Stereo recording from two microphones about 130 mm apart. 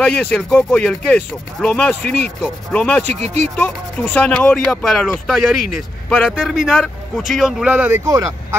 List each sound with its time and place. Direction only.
0.0 s a man's voice: 5° left (ahead or behind); by 8.5 s 20° right (ahead or behind)